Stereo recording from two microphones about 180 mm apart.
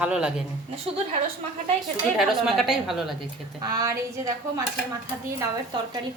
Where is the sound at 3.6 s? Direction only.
20° right (ahead or behind).